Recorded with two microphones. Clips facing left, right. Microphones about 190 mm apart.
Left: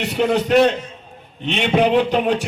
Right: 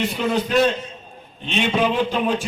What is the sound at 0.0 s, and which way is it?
A man's voice, 65° left (ahead or behind).